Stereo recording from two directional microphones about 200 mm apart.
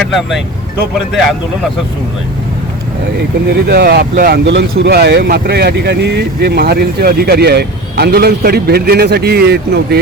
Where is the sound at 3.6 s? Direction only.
55° right (ahead or behind).